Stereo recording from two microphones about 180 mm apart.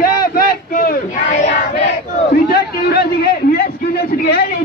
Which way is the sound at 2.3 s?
60° left (ahead or behind).